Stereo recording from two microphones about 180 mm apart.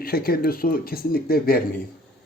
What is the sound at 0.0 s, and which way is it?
Speech, 55° left (ahead or behind).